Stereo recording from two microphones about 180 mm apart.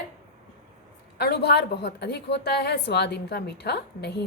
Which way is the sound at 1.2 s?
65° left (ahead or behind).